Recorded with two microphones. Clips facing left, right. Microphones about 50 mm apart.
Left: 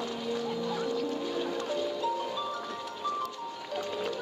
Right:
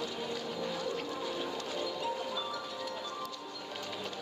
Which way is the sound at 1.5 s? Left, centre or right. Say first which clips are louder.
Left 5 dB; left.